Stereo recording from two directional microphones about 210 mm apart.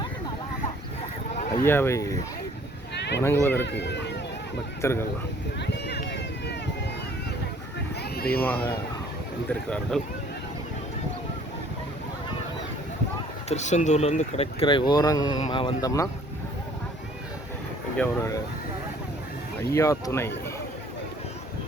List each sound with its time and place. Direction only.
1.5 s speech: 10° left (ahead or behind)
2.9 s a sound: 55° left (ahead or behind)
3.2 s speech: 10° left (ahead or behind)
3.6 s speech: 55° left (ahead or behind)
4.8 s speech: 10° left (ahead or behind)
5.5 s run: 50° left (ahead or behind)
8.1 s speech: 45° left (ahead or behind)
8.4 s speech: 10° left (ahead or behind)
13.5 s speech: 35° left (ahead or behind); by 16.0 s 15° left (ahead or behind)
17.9 s speech: 10° left (ahead or behind)
19.7 s speech: 15° left (ahead or behind)